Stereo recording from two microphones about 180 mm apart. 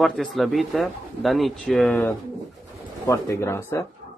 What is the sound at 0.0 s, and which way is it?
Speech, centre (ahead or behind).